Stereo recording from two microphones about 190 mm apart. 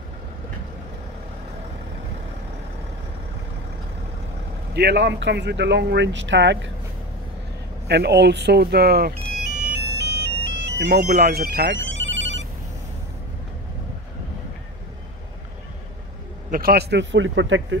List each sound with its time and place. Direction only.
4.7 s speech: 65° right (ahead or behind)
7.9 s speech: 60° right (ahead or behind)
9.7 s a sound: 60° right (ahead or behind)
10.9 s speech: 50° right (ahead or behind); by 12.4 s 75° right (ahead or behind)
16.4 s speech: 50° right (ahead or behind); by 17.7 s 80° right